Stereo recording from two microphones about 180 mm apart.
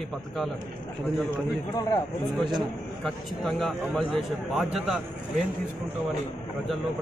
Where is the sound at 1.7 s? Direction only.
20° left (ahead or behind).